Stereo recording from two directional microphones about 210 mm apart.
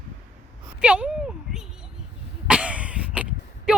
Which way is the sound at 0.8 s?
5° right (ahead or behind).